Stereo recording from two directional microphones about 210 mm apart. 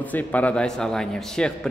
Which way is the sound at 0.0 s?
10° left (ahead or behind).